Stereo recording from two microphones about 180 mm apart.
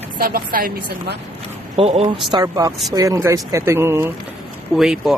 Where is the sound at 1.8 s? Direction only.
35° right (ahead or behind).